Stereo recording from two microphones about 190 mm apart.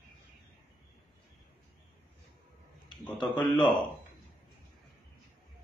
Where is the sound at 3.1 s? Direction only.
25° left (ahead or behind).